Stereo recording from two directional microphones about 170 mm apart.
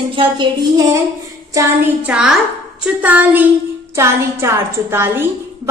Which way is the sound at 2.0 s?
5° right (ahead or behind).